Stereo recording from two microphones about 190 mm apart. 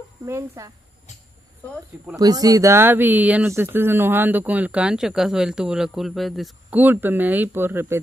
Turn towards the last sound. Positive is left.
turn(degrees=-10)  # may be behind; listen again after turning